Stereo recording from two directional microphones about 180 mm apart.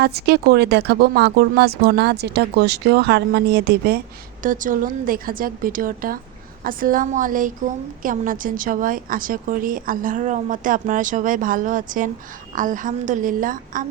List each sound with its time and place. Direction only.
0.0 s speech: 60° right (ahead or behind)
4.4 s a woman's voice: 50° right (ahead or behind)